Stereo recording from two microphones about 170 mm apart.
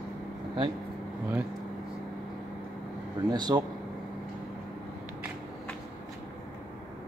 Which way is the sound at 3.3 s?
25° right (ahead or behind).